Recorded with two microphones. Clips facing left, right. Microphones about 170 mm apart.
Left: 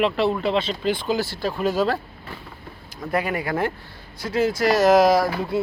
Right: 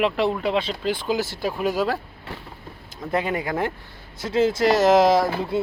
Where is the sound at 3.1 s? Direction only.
20° right (ahead or behind).